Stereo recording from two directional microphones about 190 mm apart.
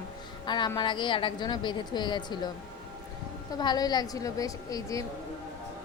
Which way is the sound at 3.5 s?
20° left (ahead or behind).